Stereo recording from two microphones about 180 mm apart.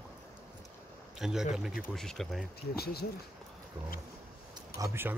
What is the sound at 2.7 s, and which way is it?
Speech, 60° left (ahead or behind).